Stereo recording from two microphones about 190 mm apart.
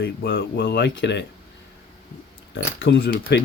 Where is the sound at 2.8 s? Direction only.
70° left (ahead or behind).